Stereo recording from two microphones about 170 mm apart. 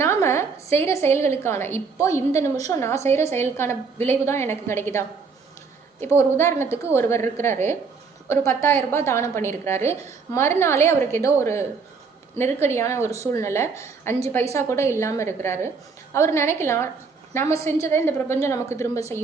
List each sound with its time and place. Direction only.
0.0 s a woman's voice: 15° left (ahead or behind)